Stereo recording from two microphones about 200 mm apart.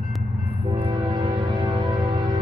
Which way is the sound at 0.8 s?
25° right (ahead or behind).